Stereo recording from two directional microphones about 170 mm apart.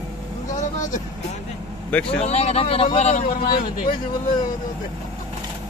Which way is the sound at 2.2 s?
40° left (ahead or behind).